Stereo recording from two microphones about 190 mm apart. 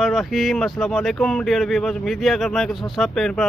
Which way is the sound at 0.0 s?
Centre (ahead or behind).